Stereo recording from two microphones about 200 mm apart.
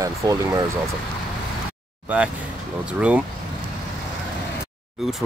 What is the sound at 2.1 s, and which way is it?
Speech, 5° right (ahead or behind).